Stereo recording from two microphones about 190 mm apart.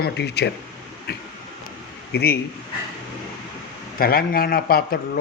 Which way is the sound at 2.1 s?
55° left (ahead or behind).